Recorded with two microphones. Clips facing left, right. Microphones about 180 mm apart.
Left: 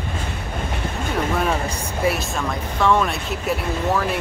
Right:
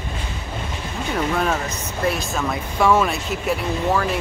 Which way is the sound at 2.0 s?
5° left (ahead or behind).